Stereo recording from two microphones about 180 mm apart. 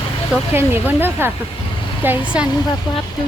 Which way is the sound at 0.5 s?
10° right (ahead or behind).